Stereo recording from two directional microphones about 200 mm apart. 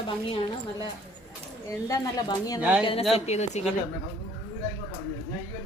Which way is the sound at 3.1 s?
35° left (ahead or behind).